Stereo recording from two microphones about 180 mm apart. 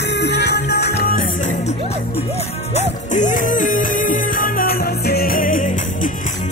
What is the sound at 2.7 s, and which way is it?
Music, 45° left (ahead or behind).